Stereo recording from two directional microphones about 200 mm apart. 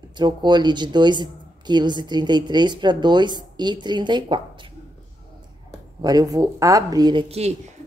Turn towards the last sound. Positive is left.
turn(degrees=-30)  # may be behind; listen again after turning